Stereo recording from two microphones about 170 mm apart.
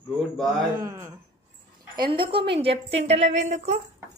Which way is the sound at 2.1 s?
30° right (ahead or behind).